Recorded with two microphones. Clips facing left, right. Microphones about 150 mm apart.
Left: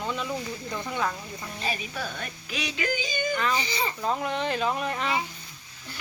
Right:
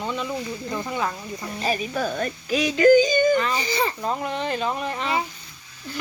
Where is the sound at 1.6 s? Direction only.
45° right (ahead or behind).